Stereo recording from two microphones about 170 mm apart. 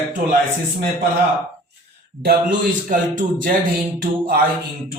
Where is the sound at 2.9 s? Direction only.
50° right (ahead or behind).